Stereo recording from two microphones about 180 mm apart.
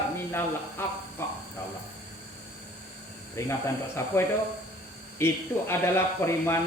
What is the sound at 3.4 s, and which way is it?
Speech, 15° left (ahead or behind).